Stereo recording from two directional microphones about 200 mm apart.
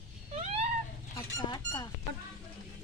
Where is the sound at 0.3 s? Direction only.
30° right (ahead or behind).